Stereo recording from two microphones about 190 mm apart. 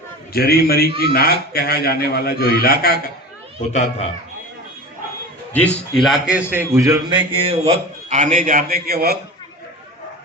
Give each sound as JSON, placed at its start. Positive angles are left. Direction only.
{"t": 0.3, "sound": "a man's voice", "side_deg": 55}
{"t": 3.7, "sound": "speech", "side_deg": 35}
{"t": 5.5, "sound": "a man's voice", "side_deg": 5}
{"t": 7.3, "sound": "a man's voice", "side_deg": -30}